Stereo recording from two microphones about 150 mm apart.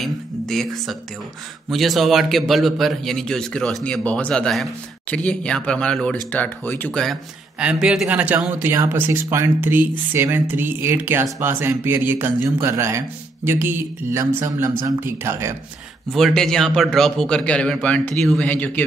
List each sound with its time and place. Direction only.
0.0 s a sound: centre (ahead or behind)
1.7 s a man's voice: centre (ahead or behind)
7.5 s speech: 5° right (ahead or behind)
16.1 s a man's voice: centre (ahead or behind)